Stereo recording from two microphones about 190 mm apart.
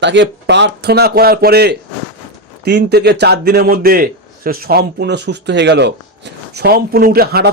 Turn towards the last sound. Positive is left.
turn(degrees=-55)  # may be behind; listen again after turning